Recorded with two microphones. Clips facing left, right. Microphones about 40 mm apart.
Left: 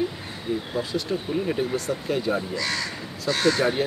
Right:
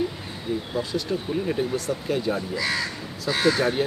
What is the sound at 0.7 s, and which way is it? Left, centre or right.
Speech, centre.